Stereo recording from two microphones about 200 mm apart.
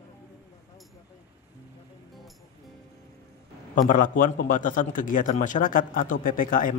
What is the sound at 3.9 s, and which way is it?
A man's voice, 45° left (ahead or behind).